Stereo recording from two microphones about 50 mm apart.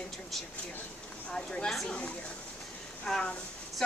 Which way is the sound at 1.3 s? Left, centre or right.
Centre.